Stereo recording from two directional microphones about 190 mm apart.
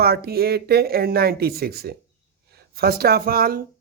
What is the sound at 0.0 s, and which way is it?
Speech, 55° right (ahead or behind).